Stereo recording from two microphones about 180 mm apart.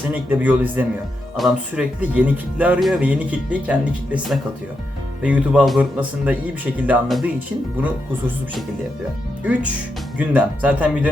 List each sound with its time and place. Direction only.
0.1 s speech: 10° right (ahead or behind)
9.4 s speech: 10° right (ahead or behind)